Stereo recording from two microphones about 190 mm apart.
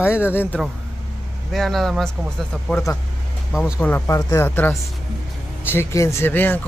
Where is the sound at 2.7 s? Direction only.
15° left (ahead or behind).